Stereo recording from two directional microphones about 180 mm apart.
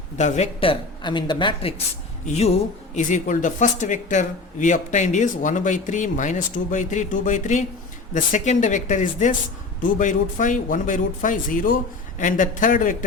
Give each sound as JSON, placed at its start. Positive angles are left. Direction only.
{"t": 0.2, "sound": "speech", "side_deg": 40}